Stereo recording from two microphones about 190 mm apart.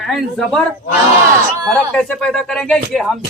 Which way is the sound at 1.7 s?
5° left (ahead or behind).